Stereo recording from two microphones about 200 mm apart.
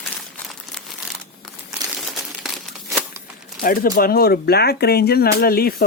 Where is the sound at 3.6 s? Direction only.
45° left (ahead or behind).